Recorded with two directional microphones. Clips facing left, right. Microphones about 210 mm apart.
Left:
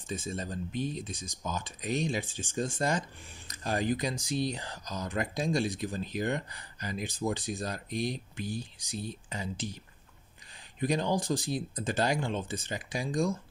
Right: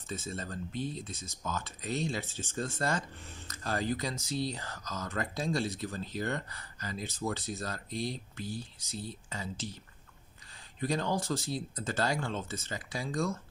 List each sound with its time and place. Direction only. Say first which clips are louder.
0.1 s speech: left 3 dB; 15° left (ahead or behind)
10.8 s speech: left 3 dB; 15° left (ahead or behind)